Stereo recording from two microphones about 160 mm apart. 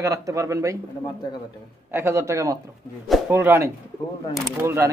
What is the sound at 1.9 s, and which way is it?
Speech, 15° right (ahead or behind).